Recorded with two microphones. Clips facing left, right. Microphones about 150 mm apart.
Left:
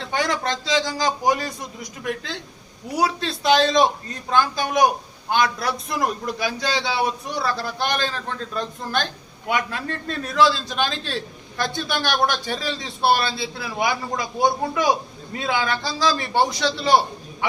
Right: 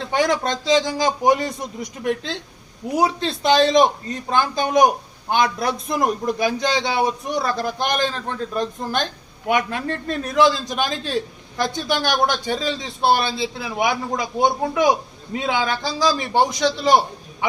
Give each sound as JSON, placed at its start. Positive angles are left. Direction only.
{"t": 0.1, "sound": "a man's voice", "side_deg": -20}
{"t": 2.9, "sound": "a man's voice", "side_deg": -20}